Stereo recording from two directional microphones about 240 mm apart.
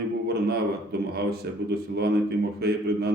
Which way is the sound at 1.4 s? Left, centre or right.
Right.